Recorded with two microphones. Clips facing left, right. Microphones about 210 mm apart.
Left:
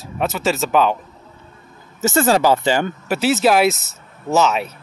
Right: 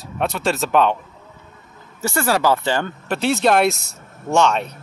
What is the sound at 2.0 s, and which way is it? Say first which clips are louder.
Speech: left 4 dB; 20° left (ahead or behind).